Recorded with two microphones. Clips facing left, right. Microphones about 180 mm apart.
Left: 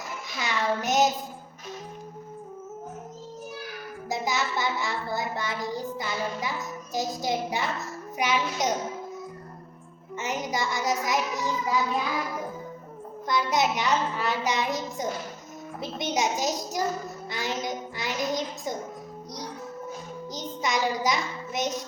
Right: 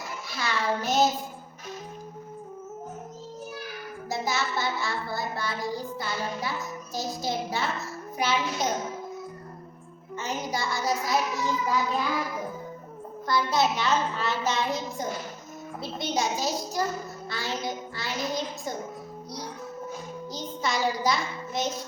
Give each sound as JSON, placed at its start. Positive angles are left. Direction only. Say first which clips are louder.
{"t": 0.3, "sound": "child singing", "louder": "left 1 dB", "side_deg": 20}
{"t": 4.1, "sound": "child singing", "louder": "left 1 dB", "side_deg": 15}
{"t": 6.9, "sound": "a child's voice", "louder": "left 3 dB", "side_deg": 15}
{"t": 10.2, "sound": "child singing", "louder": "left 1 dB", "side_deg": 20}
{"t": 13.2, "sound": "a child's voice", "louder": "even", "side_deg": 20}
{"t": 20.3, "sound": "child singing", "louder": "left 1 dB", "side_deg": 15}